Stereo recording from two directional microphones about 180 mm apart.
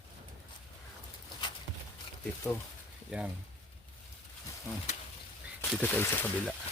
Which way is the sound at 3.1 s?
5° right (ahead or behind).